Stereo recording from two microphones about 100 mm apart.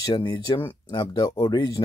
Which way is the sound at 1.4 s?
40° left (ahead or behind).